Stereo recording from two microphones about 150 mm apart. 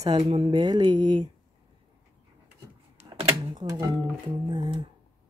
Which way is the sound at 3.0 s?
45° right (ahead or behind).